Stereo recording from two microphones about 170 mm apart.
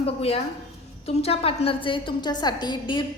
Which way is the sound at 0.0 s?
35° left (ahead or behind).